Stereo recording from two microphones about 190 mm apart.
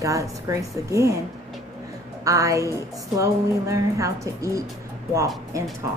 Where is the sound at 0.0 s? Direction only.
15° right (ahead or behind).